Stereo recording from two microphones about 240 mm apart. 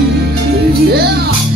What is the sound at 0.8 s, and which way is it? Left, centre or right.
Speech, right.